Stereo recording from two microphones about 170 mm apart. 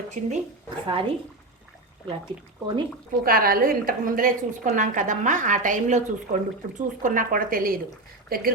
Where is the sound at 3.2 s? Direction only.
60° right (ahead or behind).